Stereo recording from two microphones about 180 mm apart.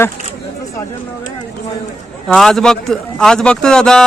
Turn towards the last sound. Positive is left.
turn(degrees=5)  # may be behind; listen again after turning